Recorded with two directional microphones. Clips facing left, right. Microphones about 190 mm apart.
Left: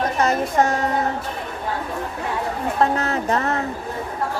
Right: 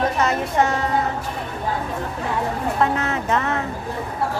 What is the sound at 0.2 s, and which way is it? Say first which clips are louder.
Music: left 4 dB; 40° left (ahead or behind).